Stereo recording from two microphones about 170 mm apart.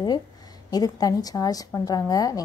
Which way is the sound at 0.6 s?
20° left (ahead or behind).